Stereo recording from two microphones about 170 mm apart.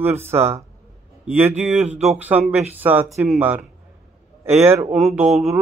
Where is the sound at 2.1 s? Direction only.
10° right (ahead or behind).